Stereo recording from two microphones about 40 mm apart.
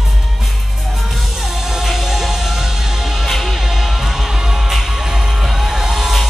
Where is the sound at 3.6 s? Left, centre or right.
Centre.